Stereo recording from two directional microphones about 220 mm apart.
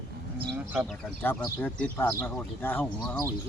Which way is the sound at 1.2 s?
10° left (ahead or behind).